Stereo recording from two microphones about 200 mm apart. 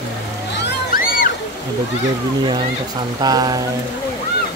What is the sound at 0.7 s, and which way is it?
Music, 45° left (ahead or behind).